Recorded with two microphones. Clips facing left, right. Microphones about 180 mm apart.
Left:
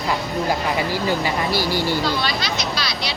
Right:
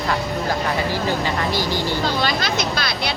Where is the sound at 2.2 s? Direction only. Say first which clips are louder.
Right 3 dB; 50° right (ahead or behind).